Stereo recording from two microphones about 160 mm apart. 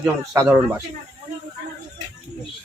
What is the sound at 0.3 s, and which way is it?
Speech, 10° right (ahead or behind).